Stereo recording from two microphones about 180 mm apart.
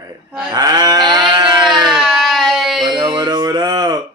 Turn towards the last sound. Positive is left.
turn(degrees=-25)  # may be behind; listen again after turning